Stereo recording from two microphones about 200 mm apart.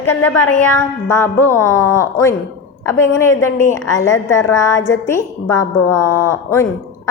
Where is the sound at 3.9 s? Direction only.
15° left (ahead or behind).